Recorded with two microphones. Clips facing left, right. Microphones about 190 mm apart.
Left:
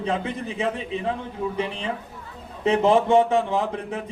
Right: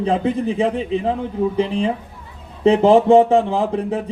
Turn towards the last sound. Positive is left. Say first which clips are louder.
# right 6 dB
turn(degrees=-30)  # may be behind; listen again after turning